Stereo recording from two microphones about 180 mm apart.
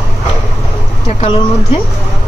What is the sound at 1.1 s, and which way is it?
Speech, 30° left (ahead or behind).